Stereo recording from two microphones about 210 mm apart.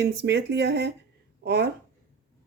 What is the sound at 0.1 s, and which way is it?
Speech, 50° right (ahead or behind).